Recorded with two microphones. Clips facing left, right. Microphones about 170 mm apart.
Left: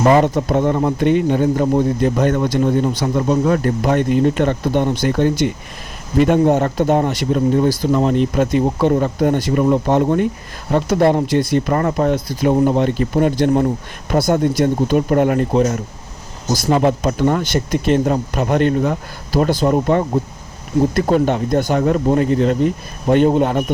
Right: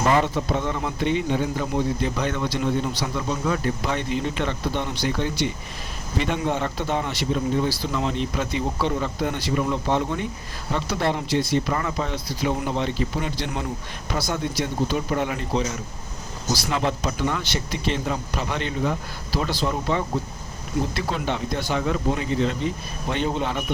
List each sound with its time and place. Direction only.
0.1 s speech: 45° left (ahead or behind)